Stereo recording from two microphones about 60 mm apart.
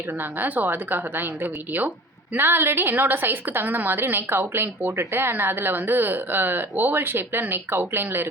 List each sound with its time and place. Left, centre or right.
0.2 s a woman's voice: right